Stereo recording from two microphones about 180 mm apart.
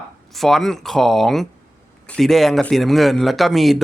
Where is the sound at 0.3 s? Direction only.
Centre (ahead or behind).